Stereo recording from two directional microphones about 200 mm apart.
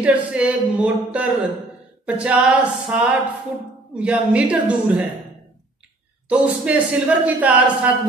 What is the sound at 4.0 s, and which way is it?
A woman's voice, 5° right (ahead or behind).